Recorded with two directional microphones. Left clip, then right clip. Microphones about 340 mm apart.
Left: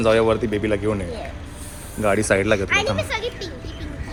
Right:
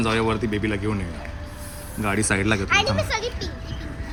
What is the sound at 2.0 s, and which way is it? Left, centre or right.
Speech, centre.